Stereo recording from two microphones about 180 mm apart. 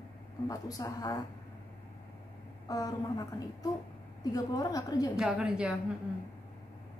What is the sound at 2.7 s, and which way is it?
A woman's voice, 20° left (ahead or behind).